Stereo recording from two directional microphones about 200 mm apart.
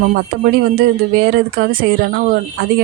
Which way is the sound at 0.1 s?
45° right (ahead or behind).